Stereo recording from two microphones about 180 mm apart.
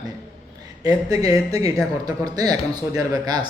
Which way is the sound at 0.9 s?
20° right (ahead or behind).